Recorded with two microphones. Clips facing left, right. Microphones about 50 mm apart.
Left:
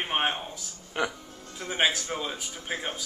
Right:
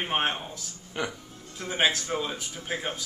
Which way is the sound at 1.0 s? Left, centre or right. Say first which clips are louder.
Left 3 dB; centre.